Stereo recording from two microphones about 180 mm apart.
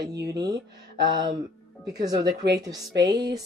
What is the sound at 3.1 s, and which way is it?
Speech, 60° right (ahead or behind).